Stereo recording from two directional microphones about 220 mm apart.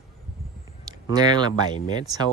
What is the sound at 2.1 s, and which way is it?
Speech, 15° right (ahead or behind).